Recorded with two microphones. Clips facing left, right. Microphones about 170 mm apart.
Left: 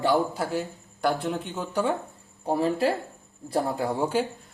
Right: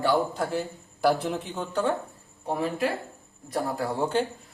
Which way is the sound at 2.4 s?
35° left (ahead or behind).